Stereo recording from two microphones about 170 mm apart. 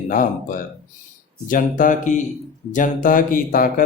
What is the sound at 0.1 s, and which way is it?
Speech, 55° left (ahead or behind).